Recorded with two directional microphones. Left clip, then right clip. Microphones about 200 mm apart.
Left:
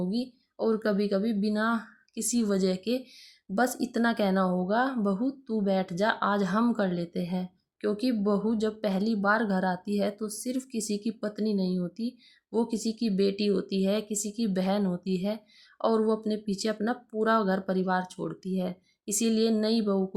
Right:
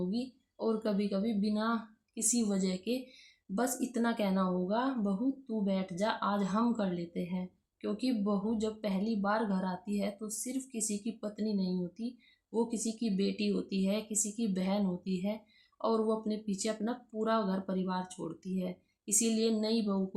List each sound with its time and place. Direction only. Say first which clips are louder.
0.1 s speech: left 5 dB; 40° left (ahead or behind)